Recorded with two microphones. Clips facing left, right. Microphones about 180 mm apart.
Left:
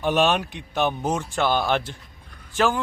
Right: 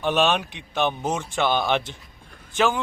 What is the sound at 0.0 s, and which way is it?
A man's voice, 5° left (ahead or behind).